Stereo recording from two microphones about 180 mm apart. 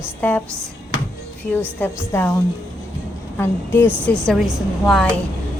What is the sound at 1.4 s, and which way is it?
Speech, 10° left (ahead or behind).